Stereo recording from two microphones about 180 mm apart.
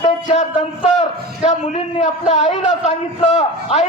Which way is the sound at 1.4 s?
40° left (ahead or behind).